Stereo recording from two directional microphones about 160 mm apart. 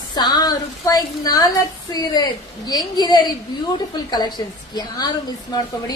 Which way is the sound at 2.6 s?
25° left (ahead or behind).